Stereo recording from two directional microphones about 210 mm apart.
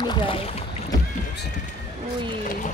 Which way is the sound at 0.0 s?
20° left (ahead or behind).